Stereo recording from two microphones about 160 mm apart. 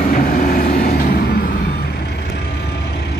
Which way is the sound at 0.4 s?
60° left (ahead or behind).